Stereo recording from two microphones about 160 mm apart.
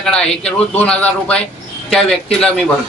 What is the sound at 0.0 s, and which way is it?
Speech, 5° left (ahead or behind).